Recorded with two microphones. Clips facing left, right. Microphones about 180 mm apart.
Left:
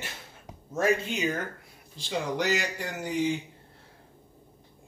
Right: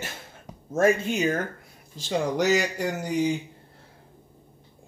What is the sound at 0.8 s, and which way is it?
Speech, 45° right (ahead or behind).